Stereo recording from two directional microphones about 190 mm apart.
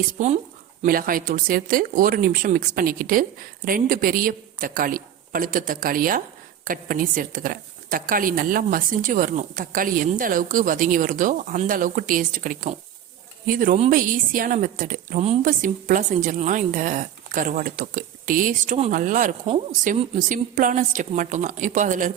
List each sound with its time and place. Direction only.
0.2 s a woman's voice: 45° right (ahead or behind)